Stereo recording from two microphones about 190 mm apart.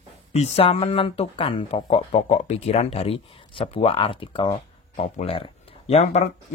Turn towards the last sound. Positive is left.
turn(degrees=35)  # may be behind; listen again after turning